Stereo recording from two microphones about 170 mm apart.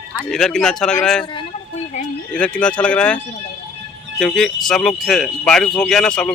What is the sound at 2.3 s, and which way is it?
Speech, 5° left (ahead or behind).